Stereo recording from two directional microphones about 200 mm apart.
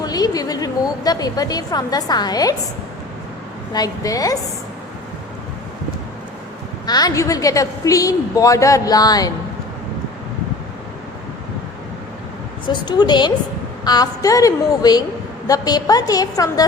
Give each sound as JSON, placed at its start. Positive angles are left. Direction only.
{"t": 0.0, "sound": "a woman's voice", "side_deg": 20}
{"t": 3.7, "sound": "a woman's voice", "side_deg": 20}
{"t": 6.8, "sound": "a woman's voice", "side_deg": 20}
{"t": 12.6, "sound": "a woman's voice", "side_deg": 20}